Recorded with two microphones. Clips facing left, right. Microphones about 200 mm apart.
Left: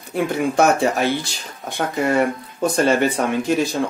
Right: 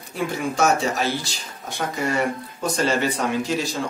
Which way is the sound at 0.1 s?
60° left (ahead or behind).